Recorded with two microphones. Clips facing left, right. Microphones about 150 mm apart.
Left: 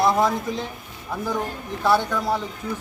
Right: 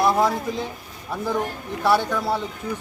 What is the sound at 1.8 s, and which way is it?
Speech, 10° right (ahead or behind).